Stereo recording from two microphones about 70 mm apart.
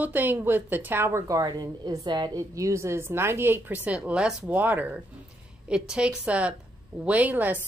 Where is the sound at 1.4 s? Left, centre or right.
Right.